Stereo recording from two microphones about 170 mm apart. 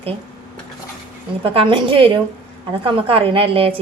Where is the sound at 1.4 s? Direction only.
30° right (ahead or behind).